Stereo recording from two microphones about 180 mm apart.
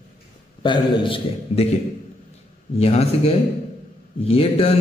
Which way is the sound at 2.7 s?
35° left (ahead or behind).